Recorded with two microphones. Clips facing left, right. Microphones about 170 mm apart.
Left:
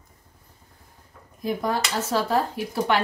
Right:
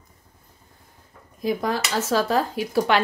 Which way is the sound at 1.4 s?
90° right.